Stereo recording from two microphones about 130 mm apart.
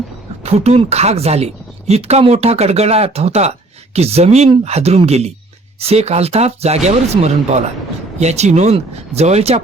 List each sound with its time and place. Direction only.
0.4 s speech: 55° right (ahead or behind)